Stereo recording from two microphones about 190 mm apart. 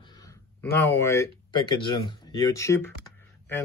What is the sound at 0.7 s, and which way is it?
Speech, 15° left (ahead or behind).